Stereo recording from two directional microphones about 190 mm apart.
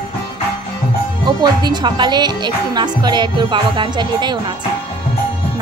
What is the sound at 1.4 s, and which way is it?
A woman's voice, 25° right (ahead or behind).